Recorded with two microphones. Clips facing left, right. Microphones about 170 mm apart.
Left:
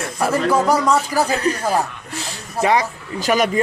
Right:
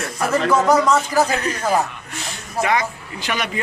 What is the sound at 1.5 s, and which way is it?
Speech, 35° left (ahead or behind).